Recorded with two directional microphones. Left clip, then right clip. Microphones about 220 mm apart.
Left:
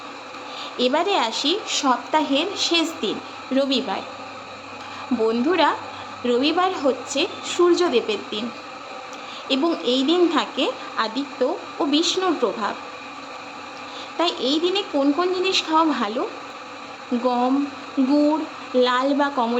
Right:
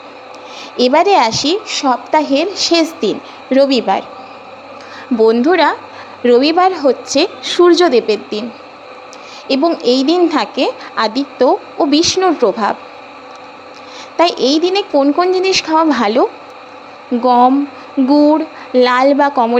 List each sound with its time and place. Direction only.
0.8 s a woman's voice: 25° right (ahead or behind)
1.5 s a woman's voice: 15° right (ahead or behind)
5.2 s a woman's voice: 30° right (ahead or behind)
9.5 s a woman's voice: 25° right (ahead or behind)
14.2 s a child's voice: 30° right (ahead or behind)
17.2 s a child's voice: 35° right (ahead or behind)